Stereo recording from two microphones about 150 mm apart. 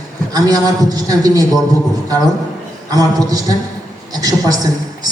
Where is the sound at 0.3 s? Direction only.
25° right (ahead or behind).